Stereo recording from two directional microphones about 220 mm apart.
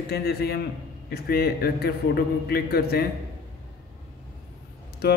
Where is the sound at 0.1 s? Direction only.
45° left (ahead or behind).